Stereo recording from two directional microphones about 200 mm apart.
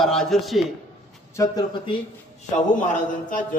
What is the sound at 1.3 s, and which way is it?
Speech, 20° left (ahead or behind).